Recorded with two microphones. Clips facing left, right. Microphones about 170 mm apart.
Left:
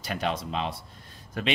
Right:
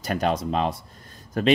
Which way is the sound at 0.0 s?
45° right (ahead or behind).